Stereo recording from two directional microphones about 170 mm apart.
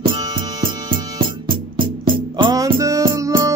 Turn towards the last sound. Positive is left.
turn(degrees=-20)  # may be behind; listen again after turning